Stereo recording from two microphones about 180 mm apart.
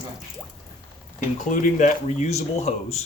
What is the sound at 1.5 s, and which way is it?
Speech, 45° left (ahead or behind).